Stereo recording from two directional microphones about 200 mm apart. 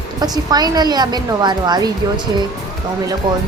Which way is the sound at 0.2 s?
20° right (ahead or behind).